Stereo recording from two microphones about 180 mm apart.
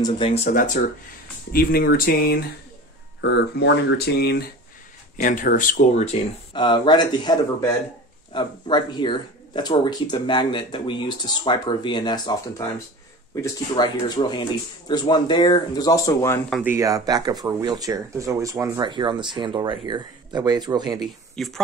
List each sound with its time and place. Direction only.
0.0 s speech: 30° left (ahead or behind)
1.5 s speech: 55° left (ahead or behind)
3.2 s speech: 70° left (ahead or behind)
5.1 s speech: 50° left (ahead or behind)
6.5 s speech: 25° left (ahead or behind)
16.6 s speech: 15° right (ahead or behind)
21.4 s speech: centre (ahead or behind)